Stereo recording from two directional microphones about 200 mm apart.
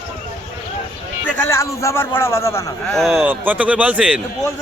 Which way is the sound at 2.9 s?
Centre (ahead or behind).